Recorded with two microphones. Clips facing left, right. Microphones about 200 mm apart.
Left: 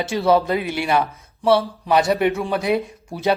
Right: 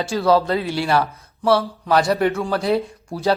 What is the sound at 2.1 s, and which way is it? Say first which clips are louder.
Speech: even; centre (ahead or behind).